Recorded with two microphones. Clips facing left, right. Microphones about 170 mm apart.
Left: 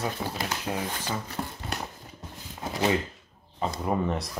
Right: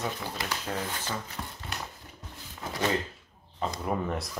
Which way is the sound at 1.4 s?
25° left (ahead or behind).